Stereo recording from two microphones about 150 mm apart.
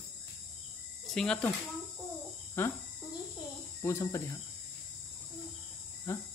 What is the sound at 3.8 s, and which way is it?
Speech, 20° left (ahead or behind).